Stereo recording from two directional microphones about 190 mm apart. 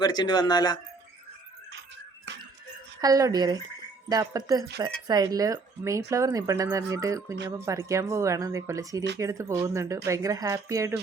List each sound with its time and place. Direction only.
0.0 s speech: 20° left (ahead or behind)
3.0 s speech: 20° right (ahead or behind)